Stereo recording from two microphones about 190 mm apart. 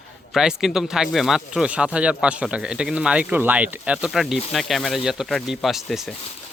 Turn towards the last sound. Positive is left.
turn(degrees=0)  # may be behind; listen again after turning